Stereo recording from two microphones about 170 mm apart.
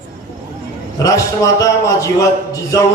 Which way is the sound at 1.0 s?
20° left (ahead or behind).